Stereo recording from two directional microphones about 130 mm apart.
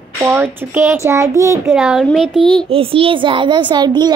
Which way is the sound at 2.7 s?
45° right (ahead or behind).